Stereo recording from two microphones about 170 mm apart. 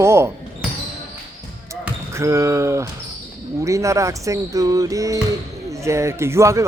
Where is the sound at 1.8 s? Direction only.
15° right (ahead or behind).